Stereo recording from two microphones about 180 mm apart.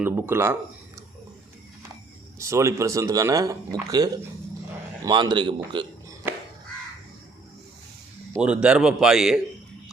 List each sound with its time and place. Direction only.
0.0 s speech: 10° right (ahead or behind)
2.4 s a man's voice: 15° right (ahead or behind)
8.4 s a man's voice: 5° right (ahead or behind)